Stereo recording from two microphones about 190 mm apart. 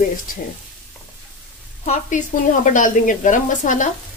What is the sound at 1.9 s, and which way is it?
Speech, 40° left (ahead or behind).